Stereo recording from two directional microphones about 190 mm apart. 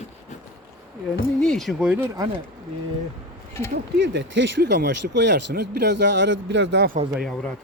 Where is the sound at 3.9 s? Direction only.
70° right (ahead or behind).